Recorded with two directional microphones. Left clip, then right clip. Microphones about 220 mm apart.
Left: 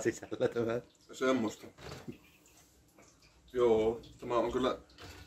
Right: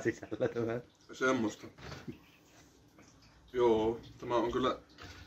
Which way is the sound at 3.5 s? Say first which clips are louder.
Left 1 dB; centre (ahead or behind).